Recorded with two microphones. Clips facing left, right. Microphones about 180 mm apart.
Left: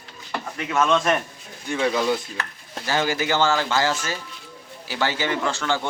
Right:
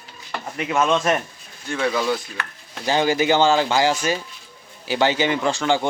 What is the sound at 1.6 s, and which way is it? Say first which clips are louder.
Speech: even; 15° left (ahead or behind).